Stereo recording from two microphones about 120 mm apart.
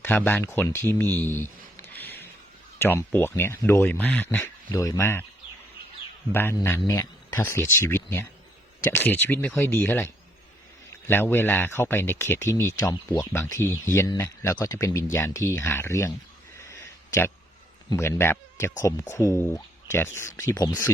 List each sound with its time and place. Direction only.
0.0 s speech: 15° left (ahead or behind)
1.2 s a sound: 20° left (ahead or behind)
2.7 s speech: 20° left (ahead or behind)
6.3 s speech: 20° left (ahead or behind)
16.6 s a sound: 25° left (ahead or behind)
17.8 s speech: 25° left (ahead or behind)